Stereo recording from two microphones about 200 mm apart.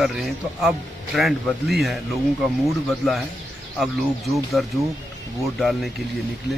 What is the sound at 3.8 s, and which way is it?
A man's voice, centre (ahead or behind).